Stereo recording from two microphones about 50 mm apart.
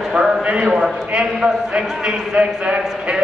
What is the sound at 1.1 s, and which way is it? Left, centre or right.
A man's voice, centre.